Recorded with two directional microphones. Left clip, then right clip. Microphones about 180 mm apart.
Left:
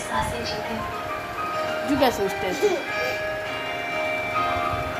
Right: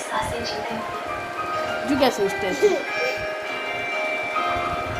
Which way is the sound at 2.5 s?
15° right (ahead or behind).